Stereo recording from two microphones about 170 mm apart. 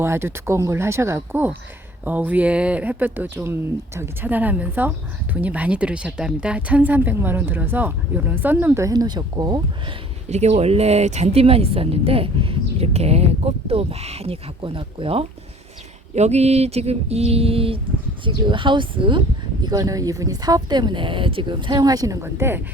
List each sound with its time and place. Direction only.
0.0 s speech: 15° right (ahead or behind)
10.2 s speech: 40° right (ahead or behind); by 22.6 s 15° right (ahead or behind)